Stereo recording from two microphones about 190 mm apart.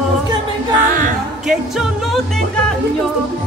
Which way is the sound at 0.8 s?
45° right (ahead or behind).